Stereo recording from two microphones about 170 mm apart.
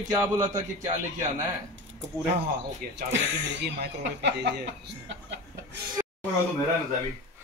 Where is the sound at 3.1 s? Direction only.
85° right.